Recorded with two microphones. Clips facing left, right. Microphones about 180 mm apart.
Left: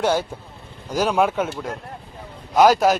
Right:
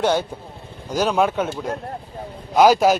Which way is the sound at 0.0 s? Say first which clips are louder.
Right 1 dB; 5° left (ahead or behind).